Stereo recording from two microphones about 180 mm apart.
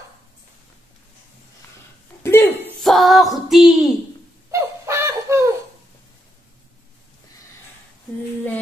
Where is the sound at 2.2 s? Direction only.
15° left (ahead or behind).